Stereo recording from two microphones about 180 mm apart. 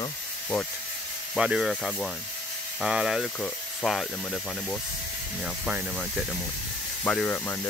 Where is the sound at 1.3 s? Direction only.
5° right (ahead or behind).